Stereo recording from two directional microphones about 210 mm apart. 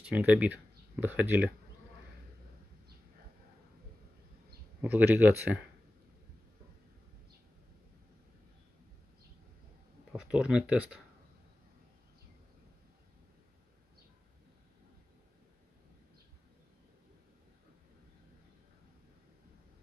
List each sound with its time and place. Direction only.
0.0 s speech: 5° right (ahead or behind)
4.8 s speech: 10° right (ahead or behind)
10.1 s speech: 5° right (ahead or behind)